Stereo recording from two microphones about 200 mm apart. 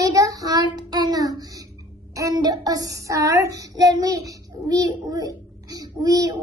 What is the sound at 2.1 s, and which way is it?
Child singing, 20° right (ahead or behind).